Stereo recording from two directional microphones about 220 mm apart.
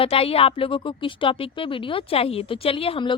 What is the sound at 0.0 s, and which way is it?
A woman's voice, 25° left (ahead or behind).